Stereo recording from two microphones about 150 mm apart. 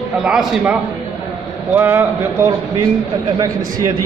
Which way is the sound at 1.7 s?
15° right (ahead or behind).